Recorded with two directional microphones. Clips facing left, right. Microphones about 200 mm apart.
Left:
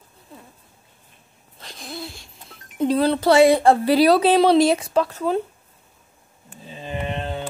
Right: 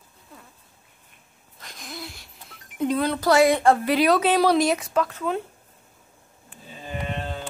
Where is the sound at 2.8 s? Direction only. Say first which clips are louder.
Left 4 dB; 30° left (ahead or behind).